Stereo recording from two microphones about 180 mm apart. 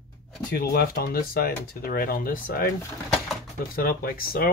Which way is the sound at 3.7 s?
55° left (ahead or behind).